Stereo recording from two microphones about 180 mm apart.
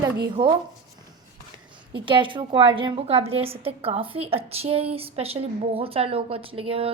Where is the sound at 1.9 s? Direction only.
25° right (ahead or behind).